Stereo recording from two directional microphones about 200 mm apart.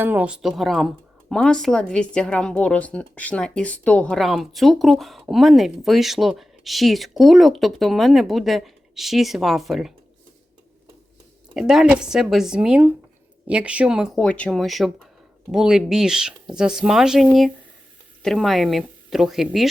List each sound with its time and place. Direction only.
0.0 s a woman's voice: 10° right (ahead or behind)
11.5 s a woman's voice: centre (ahead or behind)